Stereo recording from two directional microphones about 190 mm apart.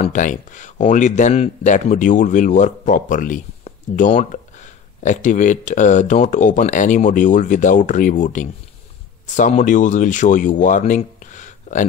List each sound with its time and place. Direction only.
0.0 s speech: 40° left (ahead or behind)